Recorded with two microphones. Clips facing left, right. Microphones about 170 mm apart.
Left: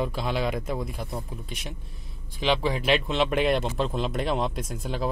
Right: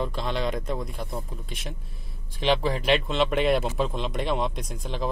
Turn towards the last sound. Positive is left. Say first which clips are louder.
# left 1 dB
turn(degrees=5)  # may be behind; listen again after turning